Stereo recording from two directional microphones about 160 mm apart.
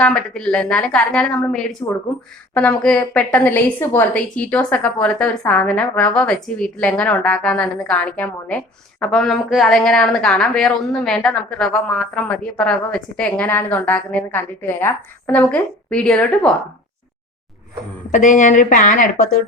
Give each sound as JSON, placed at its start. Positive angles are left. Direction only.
{"t": 0.0, "sound": "a woman's voice", "side_deg": 5}
{"t": 18.1, "sound": "speech", "side_deg": 50}